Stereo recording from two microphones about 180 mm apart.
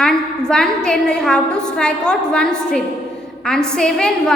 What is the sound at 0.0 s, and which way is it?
A woman's voice, 5° left (ahead or behind).